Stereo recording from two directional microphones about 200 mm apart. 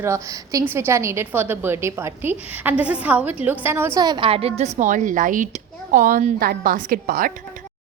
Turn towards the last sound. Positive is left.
turn(degrees=-45)  # may be behind; listen again after turning